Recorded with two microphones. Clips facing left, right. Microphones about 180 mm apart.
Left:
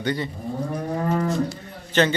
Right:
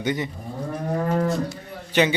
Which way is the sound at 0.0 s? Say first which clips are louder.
Even; 15° right (ahead or behind).